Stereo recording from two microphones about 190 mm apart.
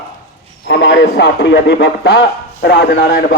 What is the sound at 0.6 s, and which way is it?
A man's voice, 70° left (ahead or behind).